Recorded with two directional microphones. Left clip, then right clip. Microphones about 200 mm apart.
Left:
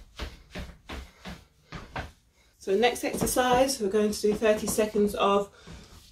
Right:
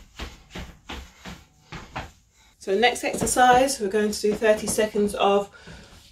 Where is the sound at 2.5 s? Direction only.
20° left (ahead or behind).